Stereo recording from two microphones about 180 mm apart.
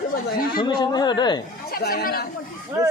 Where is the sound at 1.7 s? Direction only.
60° left (ahead or behind).